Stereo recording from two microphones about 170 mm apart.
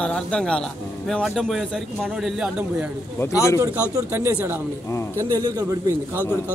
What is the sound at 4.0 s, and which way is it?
A man's voice, 15° right (ahead or behind).